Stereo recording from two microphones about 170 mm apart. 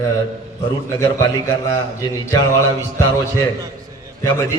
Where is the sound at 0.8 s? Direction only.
20° left (ahead or behind).